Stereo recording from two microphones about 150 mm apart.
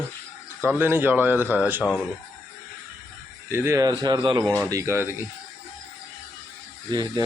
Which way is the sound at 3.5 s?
15° right (ahead or behind).